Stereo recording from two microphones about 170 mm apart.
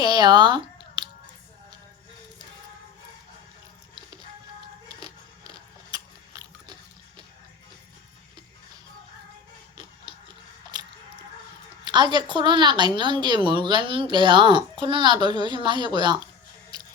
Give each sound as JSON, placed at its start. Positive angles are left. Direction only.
{"t": 0.0, "sound": "a sound", "side_deg": -25}
{"t": 5.9, "sound": "gears", "side_deg": -20}
{"t": 11.9, "sound": "a woman's voice", "side_deg": -25}